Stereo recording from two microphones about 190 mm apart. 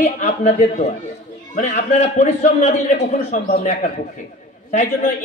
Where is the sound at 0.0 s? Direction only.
40° left (ahead or behind).